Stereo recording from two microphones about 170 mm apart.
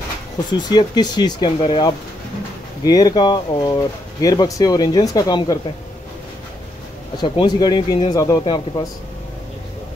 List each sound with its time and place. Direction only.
0.5 s speech: 25° left (ahead or behind)
7.2 s speech: 25° left (ahead or behind)